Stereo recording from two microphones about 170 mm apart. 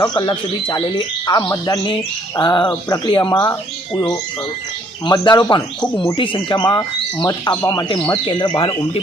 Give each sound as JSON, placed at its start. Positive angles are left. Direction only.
{"t": 0.0, "sound": "speech", "side_deg": 25}
{"t": 5.0, "sound": "speech", "side_deg": 25}